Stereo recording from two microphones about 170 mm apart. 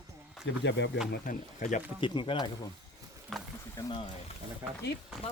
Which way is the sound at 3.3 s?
Centre (ahead or behind).